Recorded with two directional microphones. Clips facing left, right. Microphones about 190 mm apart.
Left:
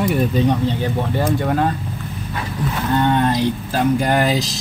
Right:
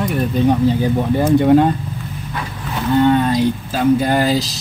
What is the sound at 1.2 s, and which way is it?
Speech, 20° right (ahead or behind).